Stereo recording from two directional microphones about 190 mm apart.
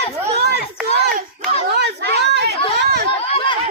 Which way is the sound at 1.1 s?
45° right (ahead or behind).